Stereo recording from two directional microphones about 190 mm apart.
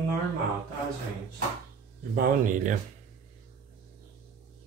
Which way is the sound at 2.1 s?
45° right (ahead or behind).